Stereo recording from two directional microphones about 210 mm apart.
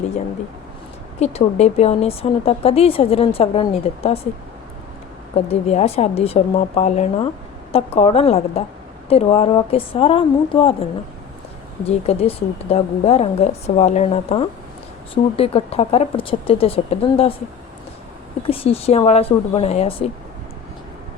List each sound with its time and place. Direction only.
1.2 s speech: 30° left (ahead or behind)
5.5 s speech: 30° left (ahead or behind)
11.9 s speech: 30° left (ahead or behind)
18.4 s speech: 25° left (ahead or behind)